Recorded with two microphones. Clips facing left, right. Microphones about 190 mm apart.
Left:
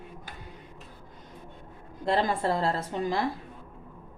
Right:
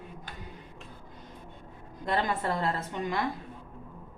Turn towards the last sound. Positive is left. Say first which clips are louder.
# left 3 dB
turn(degrees=30)  # may be behind; listen again after turning